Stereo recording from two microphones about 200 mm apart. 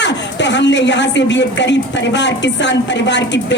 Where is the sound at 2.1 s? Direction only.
60° left (ahead or behind).